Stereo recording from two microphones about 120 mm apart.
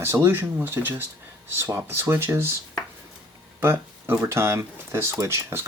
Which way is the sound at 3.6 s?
20° right (ahead or behind).